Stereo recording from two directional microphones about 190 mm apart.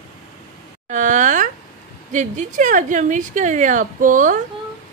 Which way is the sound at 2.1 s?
40° right (ahead or behind).